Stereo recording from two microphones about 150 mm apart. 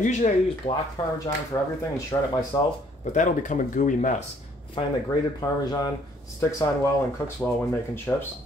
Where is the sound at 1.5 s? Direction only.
20° left (ahead or behind).